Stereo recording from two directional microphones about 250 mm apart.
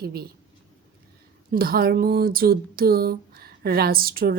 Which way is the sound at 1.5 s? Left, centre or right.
Right.